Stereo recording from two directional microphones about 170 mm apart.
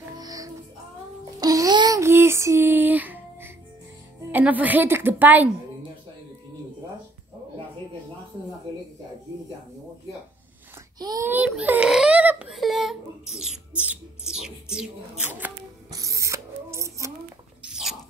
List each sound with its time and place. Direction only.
0.2 s music: 20° right (ahead or behind)
1.4 s a sound: 20° right (ahead or behind)
4.3 s a woman's voice: 10° right (ahead or behind)
11.0 s a child's voice: 25° right (ahead or behind)
11.2 s speech: 10° right (ahead or behind)
15.9 s a sound: 20° right (ahead or behind)
17.6 s rodents: 5° right (ahead or behind)